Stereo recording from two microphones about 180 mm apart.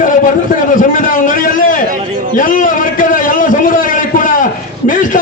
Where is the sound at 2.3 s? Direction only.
50° left (ahead or behind).